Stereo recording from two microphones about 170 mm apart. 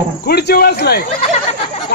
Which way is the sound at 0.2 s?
70° left (ahead or behind).